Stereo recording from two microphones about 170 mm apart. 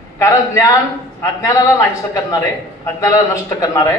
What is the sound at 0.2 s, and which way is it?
A man's voice, 20° left (ahead or behind).